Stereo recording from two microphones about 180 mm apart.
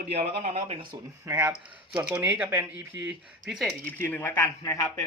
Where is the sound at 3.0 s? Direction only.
Centre (ahead or behind).